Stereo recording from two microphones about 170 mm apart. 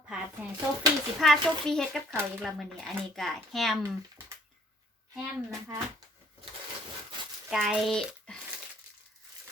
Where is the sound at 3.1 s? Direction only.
Centre (ahead or behind).